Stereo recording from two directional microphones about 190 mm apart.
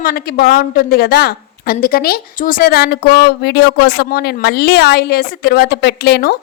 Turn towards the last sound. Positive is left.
turn(degrees=60)  # may be behind; listen again after turning